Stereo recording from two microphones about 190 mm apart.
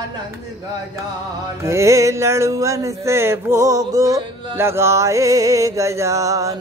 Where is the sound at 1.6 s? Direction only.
15° right (ahead or behind).